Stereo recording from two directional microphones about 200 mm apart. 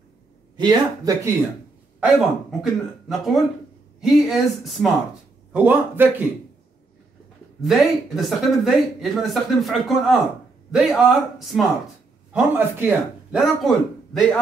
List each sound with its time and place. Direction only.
0.6 s speech: 20° right (ahead or behind)
2.0 s a man's voice: centre (ahead or behind)
7.6 s speech: centre (ahead or behind)